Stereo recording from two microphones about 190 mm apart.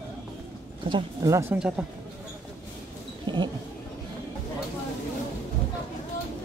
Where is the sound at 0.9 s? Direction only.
20° right (ahead or behind).